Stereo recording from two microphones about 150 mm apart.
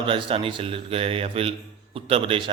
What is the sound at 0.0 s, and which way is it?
A man's voice, 35° right (ahead or behind).